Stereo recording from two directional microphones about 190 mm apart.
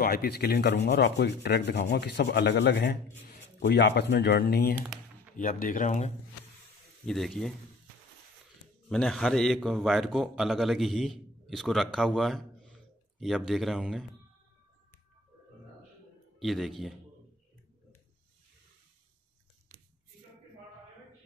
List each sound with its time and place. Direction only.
0.0 s rub: 55° left (ahead or behind)
5.3 s speech: 45° left (ahead or behind)
7.1 s a man's voice: centre (ahead or behind)
8.8 s a man's voice: 5° left (ahead or behind)
16.3 s a man's voice: centre (ahead or behind)